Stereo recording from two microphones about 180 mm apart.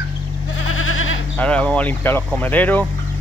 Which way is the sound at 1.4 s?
5° left (ahead or behind).